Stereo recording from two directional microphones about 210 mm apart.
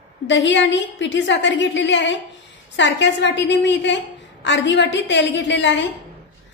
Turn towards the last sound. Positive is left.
turn(degrees=60)  # may be behind; listen again after turning